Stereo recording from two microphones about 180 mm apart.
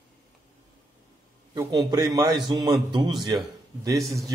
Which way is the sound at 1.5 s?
20° right (ahead or behind).